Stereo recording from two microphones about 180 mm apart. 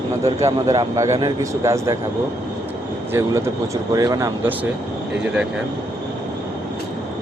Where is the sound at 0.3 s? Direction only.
20° right (ahead or behind).